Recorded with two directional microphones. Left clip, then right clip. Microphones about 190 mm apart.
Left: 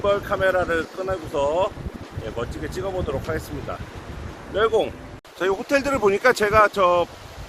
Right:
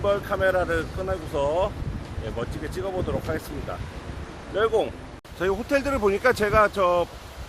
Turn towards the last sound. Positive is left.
turn(degrees=10)  # may be behind; listen again after turning